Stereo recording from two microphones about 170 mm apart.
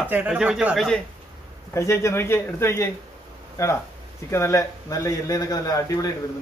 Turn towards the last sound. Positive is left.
turn(degrees=20)  # may be behind; listen again after turning